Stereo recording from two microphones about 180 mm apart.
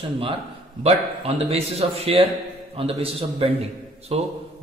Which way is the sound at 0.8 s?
35° right (ahead or behind).